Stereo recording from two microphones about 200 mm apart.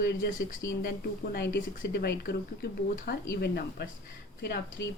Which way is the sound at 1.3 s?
55° left (ahead or behind).